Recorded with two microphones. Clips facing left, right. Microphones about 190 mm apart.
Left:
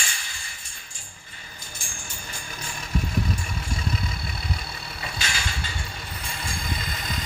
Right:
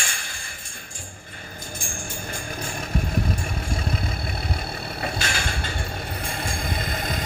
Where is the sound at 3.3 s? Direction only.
55° right (ahead or behind).